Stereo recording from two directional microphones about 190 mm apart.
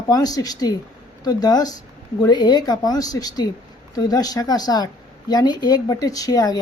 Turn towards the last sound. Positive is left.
turn(degrees=20)  # may be behind; listen again after turning